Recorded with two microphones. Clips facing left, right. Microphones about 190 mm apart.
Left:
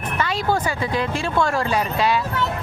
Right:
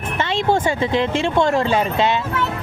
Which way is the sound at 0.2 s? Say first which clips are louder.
Right 3 dB; 25° right (ahead or behind).